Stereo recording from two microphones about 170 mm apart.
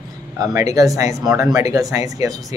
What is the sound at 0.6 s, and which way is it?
Speech, 20° right (ahead or behind).